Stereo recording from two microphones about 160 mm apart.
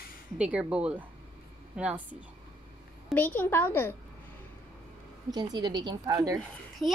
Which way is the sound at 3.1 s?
10° left (ahead or behind).